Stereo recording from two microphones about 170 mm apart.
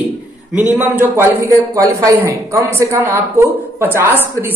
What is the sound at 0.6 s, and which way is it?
Speech, 10° right (ahead or behind).